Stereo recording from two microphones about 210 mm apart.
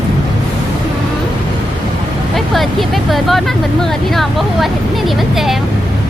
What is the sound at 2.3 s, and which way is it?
Speech, centre (ahead or behind).